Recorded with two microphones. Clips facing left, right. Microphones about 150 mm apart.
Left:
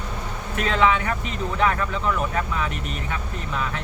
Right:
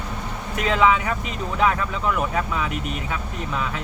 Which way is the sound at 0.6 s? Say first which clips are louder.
Right 1 dB; 15° right (ahead or behind).